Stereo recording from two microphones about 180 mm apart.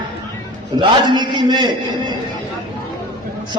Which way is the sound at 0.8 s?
25° right (ahead or behind).